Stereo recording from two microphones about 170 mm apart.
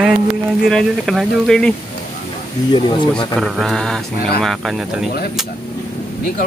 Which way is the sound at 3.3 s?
Centre (ahead or behind).